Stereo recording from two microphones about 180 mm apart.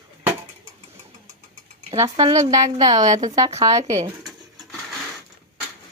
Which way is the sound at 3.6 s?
20° right (ahead or behind).